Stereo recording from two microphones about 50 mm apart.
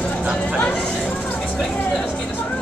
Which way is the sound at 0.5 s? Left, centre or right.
Left.